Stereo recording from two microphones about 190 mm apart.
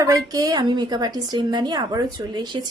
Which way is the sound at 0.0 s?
20° right (ahead or behind).